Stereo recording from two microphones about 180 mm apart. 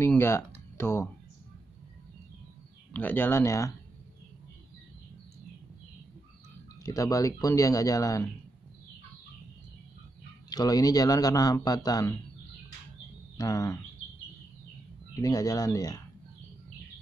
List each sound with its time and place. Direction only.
0.0 s speech: 15° left (ahead or behind)
2.9 s speech: 10° left (ahead or behind)
6.8 s speech: 20° left (ahead or behind)
10.5 s speech: 20° left (ahead or behind)
13.4 s speech: 20° left (ahead or behind)
15.1 s speech: 20° left (ahead or behind)